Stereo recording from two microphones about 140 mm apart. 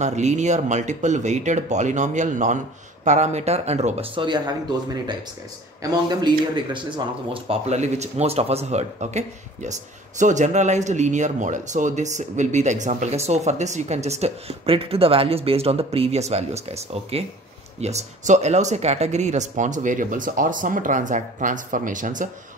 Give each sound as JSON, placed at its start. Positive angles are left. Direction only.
{"t": 0.0, "sound": "speech", "side_deg": -55}
{"t": 7.3, "sound": "speech", "side_deg": -45}